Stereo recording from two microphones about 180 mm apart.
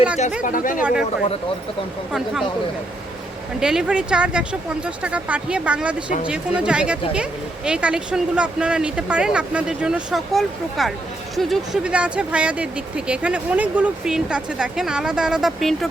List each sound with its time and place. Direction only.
0.4 s speech: 50° left (ahead or behind)
0.8 s speech: 5° right (ahead or behind)
3.6 s speech: 5° right (ahead or behind)